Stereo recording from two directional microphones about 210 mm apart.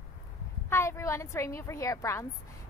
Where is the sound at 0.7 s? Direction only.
10° left (ahead or behind).